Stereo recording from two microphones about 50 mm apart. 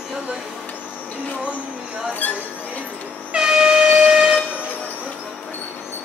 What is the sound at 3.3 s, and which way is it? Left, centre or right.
Air horn, centre.